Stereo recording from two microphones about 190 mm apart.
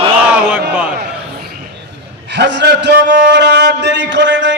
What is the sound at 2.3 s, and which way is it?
A man's voice, 70° right (ahead or behind).